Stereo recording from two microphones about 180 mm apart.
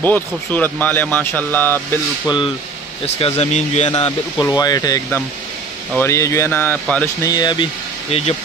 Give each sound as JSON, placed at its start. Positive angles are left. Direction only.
{"t": 0.0, "sound": "speech", "side_deg": 10}
{"t": 3.2, "sound": "speech", "side_deg": 35}
{"t": 4.4, "sound": "speech", "side_deg": 20}
{"t": 7.2, "sound": "speech", "side_deg": 20}
{"t": 8.1, "sound": "speech", "side_deg": 35}